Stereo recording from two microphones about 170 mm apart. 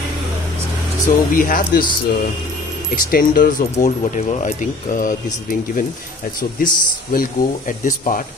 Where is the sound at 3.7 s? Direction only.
40° left (ahead or behind).